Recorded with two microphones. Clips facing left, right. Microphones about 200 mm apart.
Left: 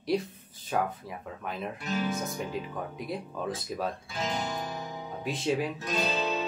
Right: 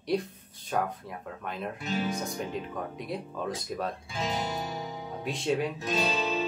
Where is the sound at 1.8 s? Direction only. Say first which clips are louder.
Even; 25° right (ahead or behind).